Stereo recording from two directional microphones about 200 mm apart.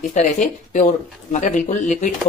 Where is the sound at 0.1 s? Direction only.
40° left (ahead or behind).